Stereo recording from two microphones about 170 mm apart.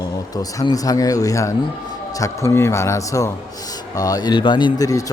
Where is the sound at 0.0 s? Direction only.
20° left (ahead or behind).